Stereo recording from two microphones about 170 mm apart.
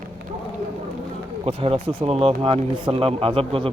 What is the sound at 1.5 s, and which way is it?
A man's voice, 30° right (ahead or behind).